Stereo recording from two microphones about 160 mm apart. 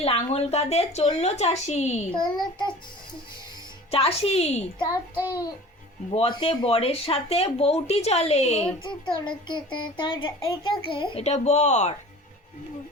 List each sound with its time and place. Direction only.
0.0 s a woman's voice: 40° left (ahead or behind)
2.1 s a child's voice: 25° left (ahead or behind)
3.9 s speech: 35° left (ahead or behind)
6.1 s speech: 30° left (ahead or behind)